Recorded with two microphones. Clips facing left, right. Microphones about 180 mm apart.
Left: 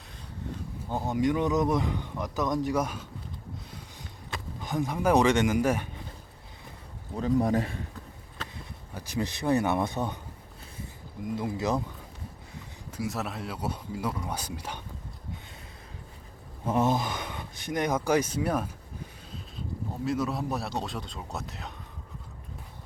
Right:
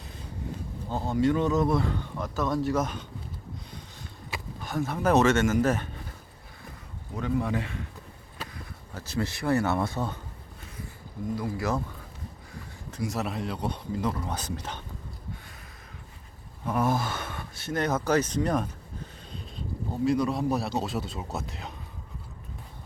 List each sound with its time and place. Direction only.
0.9 s speech: 15° left (ahead or behind)
4.6 s speech: 15° left (ahead or behind)
7.2 s a man's voice: 40° left (ahead or behind)
9.0 s speech: 15° left (ahead or behind)
11.3 s speech: 20° left (ahead or behind)
12.9 s speech: 5° left (ahead or behind)
16.6 s speech: 20° left (ahead or behind); by 18.7 s 5° left (ahead or behind)
20.1 s speech: centre (ahead or behind)